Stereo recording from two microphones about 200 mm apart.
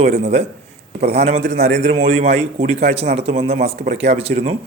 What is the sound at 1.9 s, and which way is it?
Speech, 30° right (ahead or behind).